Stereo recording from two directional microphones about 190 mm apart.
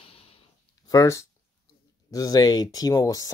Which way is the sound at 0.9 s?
15° left (ahead or behind).